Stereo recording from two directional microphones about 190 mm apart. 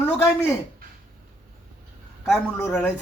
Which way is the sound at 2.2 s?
10° left (ahead or behind).